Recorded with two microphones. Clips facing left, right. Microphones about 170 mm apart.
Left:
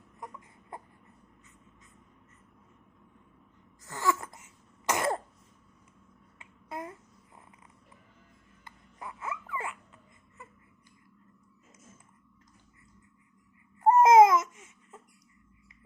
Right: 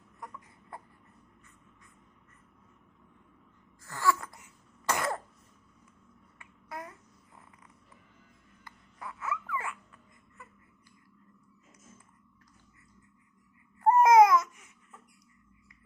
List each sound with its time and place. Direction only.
0.2 s baby cry: 20° left (ahead or behind)
3.8 s throat clearing: 20° left (ahead or behind)
6.4 s babbling: 25° left (ahead or behind)
8.6 s a sound: 20° left (ahead or behind)
13.8 s baby cry: 20° left (ahead or behind)